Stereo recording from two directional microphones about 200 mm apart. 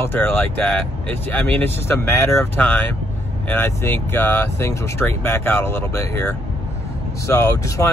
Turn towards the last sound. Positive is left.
turn(degrees=15)  # may be behind; listen again after turning